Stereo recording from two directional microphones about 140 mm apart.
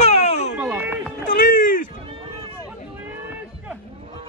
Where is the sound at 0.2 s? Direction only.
55° left (ahead or behind).